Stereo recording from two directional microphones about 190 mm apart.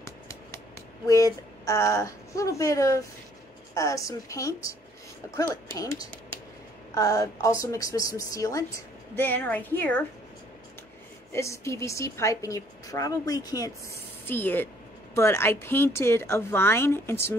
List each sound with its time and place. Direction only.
1.0 s a woman's voice: 15° left (ahead or behind)
5.8 s a woman's voice: 20° left (ahead or behind)
11.3 s a woman's voice: 15° left (ahead or behind)